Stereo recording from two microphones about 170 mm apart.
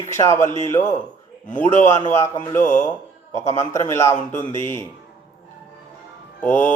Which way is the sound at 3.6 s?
15° left (ahead or behind).